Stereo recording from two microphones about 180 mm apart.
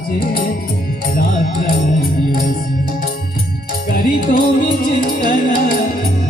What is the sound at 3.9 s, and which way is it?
Music, 50° left (ahead or behind).